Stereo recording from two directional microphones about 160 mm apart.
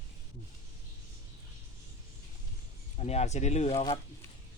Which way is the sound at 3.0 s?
40° left (ahead or behind).